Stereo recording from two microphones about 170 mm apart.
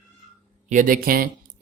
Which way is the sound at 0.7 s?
50° right (ahead or behind).